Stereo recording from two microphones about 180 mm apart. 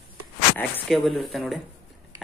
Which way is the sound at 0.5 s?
5° left (ahead or behind).